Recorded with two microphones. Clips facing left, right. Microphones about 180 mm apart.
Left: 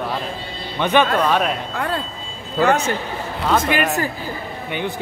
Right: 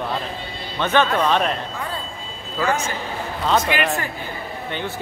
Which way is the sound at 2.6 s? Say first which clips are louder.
Left 5 dB; 65° left (ahead or behind).